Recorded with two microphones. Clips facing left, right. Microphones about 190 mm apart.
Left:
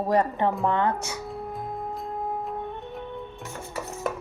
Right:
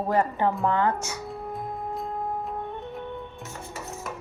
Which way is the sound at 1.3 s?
Centre (ahead or behind).